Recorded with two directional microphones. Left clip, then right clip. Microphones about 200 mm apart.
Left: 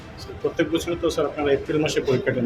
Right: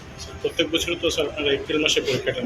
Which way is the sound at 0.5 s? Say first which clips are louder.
Right 2 dB; 50° left (ahead or behind).